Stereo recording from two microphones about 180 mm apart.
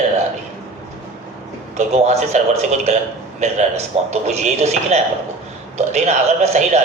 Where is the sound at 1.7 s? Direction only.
40° right (ahead or behind).